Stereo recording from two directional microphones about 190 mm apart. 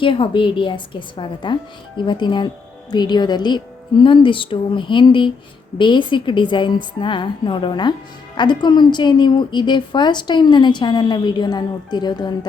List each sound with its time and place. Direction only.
0.0 s a woman's voice: 25° left (ahead or behind)